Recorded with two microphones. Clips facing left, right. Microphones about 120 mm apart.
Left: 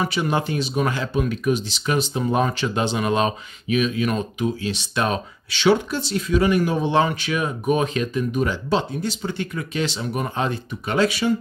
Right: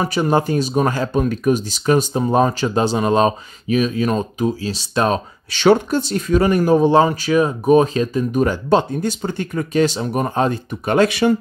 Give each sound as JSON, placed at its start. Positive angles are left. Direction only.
{"t": 0.0, "sound": "speech", "side_deg": -40}